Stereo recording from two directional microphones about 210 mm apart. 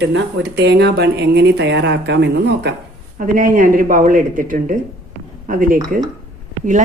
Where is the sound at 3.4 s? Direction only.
40° right (ahead or behind).